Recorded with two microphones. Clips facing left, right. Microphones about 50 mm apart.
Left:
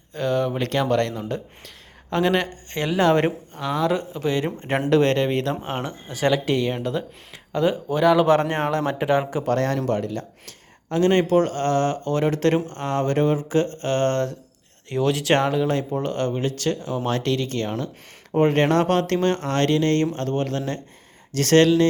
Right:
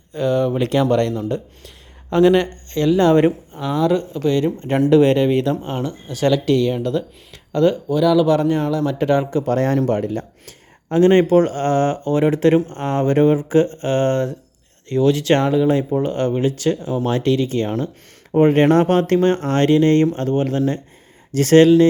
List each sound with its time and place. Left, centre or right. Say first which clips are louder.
0.1 s speech: right 4 dB; centre
4.4 s speech: right 6 dB; left
4.9 s speech: right 5 dB; centre
5.6 s speech: right 4 dB; left
7.9 s speech: right 2 dB; left
9.0 s speech: right 4 dB; centre
9.6 s speech: right 7 dB; centre
9.8 s speech: right 4 dB; right; by 14.3 s centre
14.8 s speech: right 5 dB; centre